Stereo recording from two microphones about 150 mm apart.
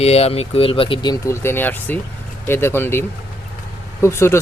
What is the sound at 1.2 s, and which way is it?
Speech, 15° left (ahead or behind).